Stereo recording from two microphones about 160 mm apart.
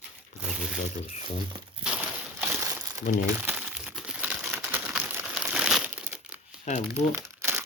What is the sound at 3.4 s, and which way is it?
Crumpling, 10° right (ahead or behind).